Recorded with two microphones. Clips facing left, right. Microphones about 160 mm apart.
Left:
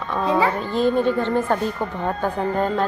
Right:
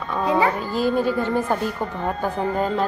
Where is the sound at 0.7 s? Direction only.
5° right (ahead or behind).